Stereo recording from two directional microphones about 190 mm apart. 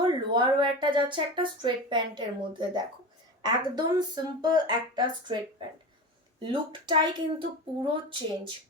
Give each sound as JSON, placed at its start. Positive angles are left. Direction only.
{"t": 0.0, "sound": "speech", "side_deg": -25}